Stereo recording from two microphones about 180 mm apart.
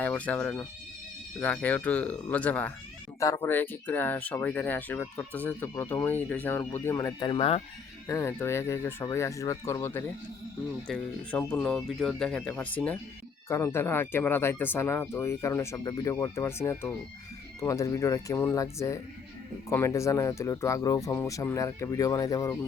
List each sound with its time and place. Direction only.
0.0 s speech: 10° left (ahead or behind); by 7.6 s 30° left (ahead or behind)
8.0 s speech: 15° left (ahead or behind)